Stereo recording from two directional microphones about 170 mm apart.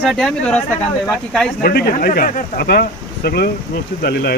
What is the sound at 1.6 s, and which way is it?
Speech, 65° left (ahead or behind).